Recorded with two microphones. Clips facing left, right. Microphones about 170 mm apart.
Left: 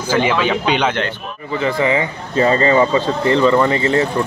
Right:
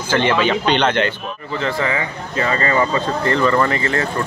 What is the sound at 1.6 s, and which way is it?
Speech, 15° left (ahead or behind).